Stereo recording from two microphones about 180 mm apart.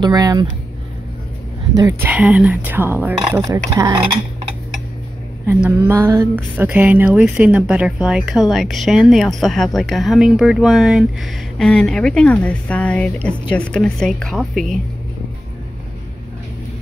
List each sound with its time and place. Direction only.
0.0 s speech: 20° right (ahead or behind)
1.8 s speech: 20° right (ahead or behind)
2.1 s speech: 5° right (ahead or behind); by 4.2 s 25° right (ahead or behind)
5.5 s speech: 10° right (ahead or behind)